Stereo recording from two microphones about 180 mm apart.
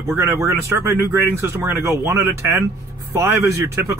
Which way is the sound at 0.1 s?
15° right (ahead or behind).